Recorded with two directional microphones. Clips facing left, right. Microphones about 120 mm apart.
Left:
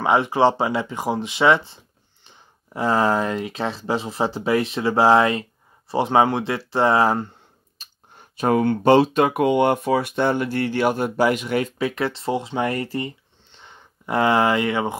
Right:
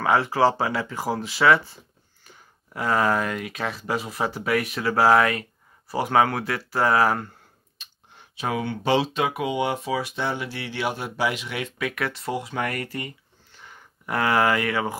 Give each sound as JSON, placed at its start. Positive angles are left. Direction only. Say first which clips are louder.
{"t": 0.0, "sound": "speech", "louder": "left 3 dB", "side_deg": 20}
{"t": 7.8, "sound": "speech", "louder": "left 2 dB", "side_deg": 45}
{"t": 11.9, "sound": "speech", "louder": "left 5 dB", "side_deg": 30}